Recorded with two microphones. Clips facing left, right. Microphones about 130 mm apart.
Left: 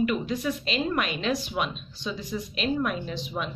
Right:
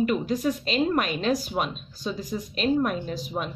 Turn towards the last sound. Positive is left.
turn(degrees=-40)  # may be behind; listen again after turning